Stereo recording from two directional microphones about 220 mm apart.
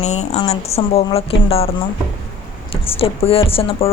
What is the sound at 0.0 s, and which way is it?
Speech, 30° left (ahead or behind).